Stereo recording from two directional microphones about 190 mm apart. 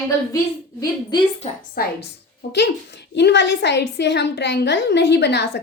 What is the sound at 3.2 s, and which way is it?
A woman's voice, 65° left (ahead or behind).